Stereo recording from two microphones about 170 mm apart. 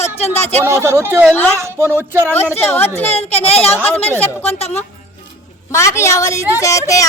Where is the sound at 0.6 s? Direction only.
15° right (ahead or behind).